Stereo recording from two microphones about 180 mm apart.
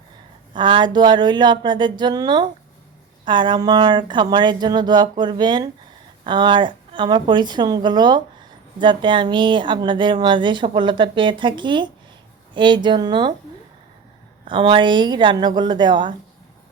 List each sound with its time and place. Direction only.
0.5 s a woman's voice: 25° right (ahead or behind)
14.4 s a woman's voice: 30° right (ahead or behind)